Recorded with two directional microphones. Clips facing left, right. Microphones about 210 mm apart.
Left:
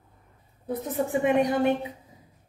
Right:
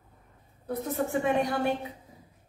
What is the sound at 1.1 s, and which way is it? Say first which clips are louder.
Speech: left 5 dB; 20° left (ahead or behind).